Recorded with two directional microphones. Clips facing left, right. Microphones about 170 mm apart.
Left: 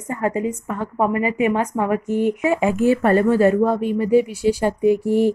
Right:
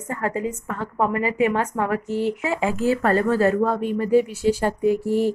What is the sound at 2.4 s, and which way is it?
A woman's voice, 20° left (ahead or behind).